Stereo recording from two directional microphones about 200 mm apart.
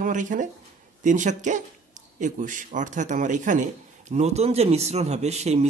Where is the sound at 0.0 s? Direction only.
40° right (ahead or behind).